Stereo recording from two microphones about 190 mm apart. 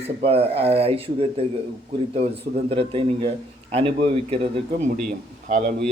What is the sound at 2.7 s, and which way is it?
A man's voice, 30° right (ahead or behind).